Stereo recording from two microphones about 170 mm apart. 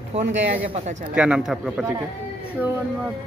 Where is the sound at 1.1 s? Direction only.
5° right (ahead or behind).